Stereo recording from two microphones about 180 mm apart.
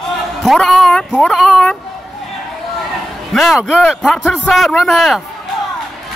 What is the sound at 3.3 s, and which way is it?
Speech, centre (ahead or behind).